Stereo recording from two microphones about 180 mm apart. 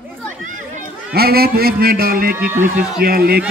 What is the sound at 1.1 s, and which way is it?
A man's voice, 60° right (ahead or behind).